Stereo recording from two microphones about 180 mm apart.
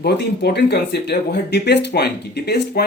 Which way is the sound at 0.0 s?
65° left (ahead or behind).